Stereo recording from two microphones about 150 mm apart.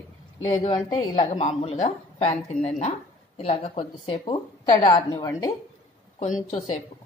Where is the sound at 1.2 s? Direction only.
45° left (ahead or behind); by 5.5 s 25° left (ahead or behind).